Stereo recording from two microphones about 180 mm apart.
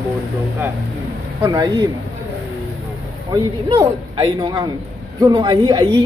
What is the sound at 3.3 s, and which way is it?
A man's voice, 20° right (ahead or behind).